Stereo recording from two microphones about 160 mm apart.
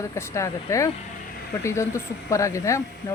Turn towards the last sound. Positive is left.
turn(degrees=20)  # may be behind; listen again after turning